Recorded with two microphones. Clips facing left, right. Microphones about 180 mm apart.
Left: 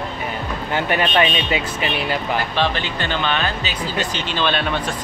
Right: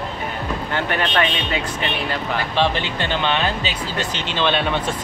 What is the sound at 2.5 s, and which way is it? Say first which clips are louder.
Speech: right 1 dB; 25° right (ahead or behind).